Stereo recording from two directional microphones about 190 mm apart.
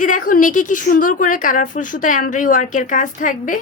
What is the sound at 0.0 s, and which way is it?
A woman's voice, 45° left (ahead or behind).